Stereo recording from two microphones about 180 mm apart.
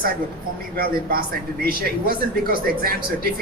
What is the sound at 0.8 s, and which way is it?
Speech, 55° right (ahead or behind).